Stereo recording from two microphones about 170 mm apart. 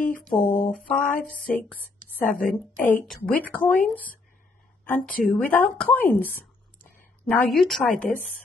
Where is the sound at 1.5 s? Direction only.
10° left (ahead or behind).